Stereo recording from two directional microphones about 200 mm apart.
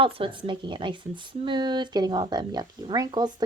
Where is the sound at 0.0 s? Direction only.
25° right (ahead or behind).